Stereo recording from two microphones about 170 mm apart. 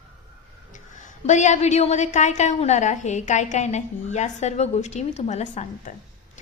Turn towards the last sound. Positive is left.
turn(degrees=45)  # may be behind; listen again after turning